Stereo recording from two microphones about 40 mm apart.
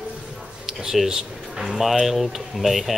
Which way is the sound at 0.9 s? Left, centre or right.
Centre.